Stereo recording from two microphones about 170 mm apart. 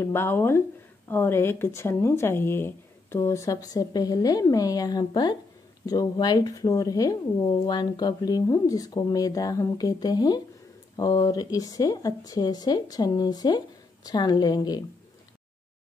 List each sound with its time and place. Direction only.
0.0 s speech: 15° left (ahead or behind)